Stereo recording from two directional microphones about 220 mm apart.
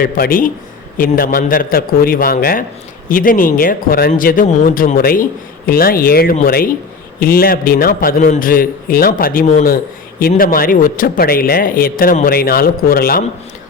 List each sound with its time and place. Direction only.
0.0 s a man's voice: 40° left (ahead or behind)